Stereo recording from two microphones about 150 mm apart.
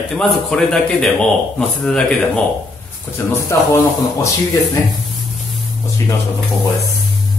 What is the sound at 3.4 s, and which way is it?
Speech, 20° left (ahead or behind).